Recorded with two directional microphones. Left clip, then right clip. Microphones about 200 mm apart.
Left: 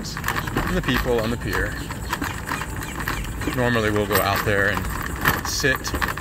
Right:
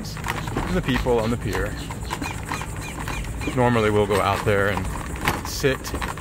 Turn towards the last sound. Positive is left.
turn(degrees=-25)  # may be behind; listen again after turning